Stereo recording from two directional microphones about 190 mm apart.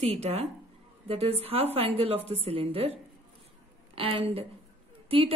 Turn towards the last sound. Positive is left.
turn(degrees=-30)  # may be behind; listen again after turning